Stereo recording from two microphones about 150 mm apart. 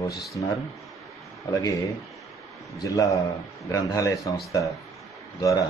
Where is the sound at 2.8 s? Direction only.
20° left (ahead or behind).